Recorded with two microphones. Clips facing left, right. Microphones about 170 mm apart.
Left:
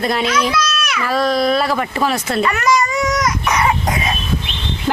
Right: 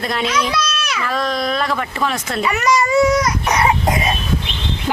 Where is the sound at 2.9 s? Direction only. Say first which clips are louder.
Right 5 dB; 30° right (ahead or behind).